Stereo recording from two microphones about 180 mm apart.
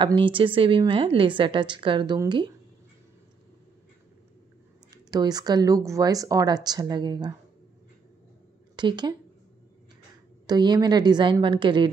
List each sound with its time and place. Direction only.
0.0 s a woman's voice: 25° right (ahead or behind)
4.9 s a woman's voice: 20° right (ahead or behind)
8.7 s speech: 25° right (ahead or behind)
10.4 s a woman's voice: 20° right (ahead or behind)